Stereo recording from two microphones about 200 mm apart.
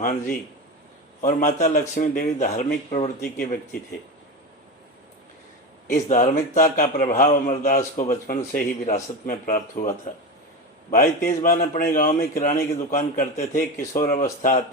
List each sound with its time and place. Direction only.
0.0 s a man's voice: 50° left (ahead or behind)
5.9 s a man's voice: 40° left (ahead or behind)